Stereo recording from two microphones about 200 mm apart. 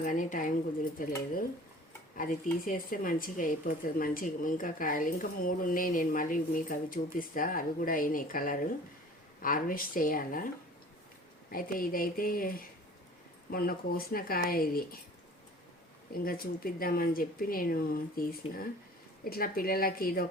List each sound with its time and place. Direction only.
0.0 s a woman's voice: 40° left (ahead or behind)
11.5 s speech: 45° left (ahead or behind)
16.2 s speech: 45° left (ahead or behind)